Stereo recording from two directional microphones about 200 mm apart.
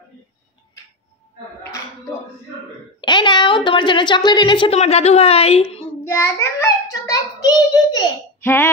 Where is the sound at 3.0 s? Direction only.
20° left (ahead or behind).